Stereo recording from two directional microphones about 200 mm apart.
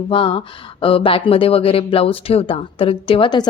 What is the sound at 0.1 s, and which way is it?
Speech, 25° left (ahead or behind).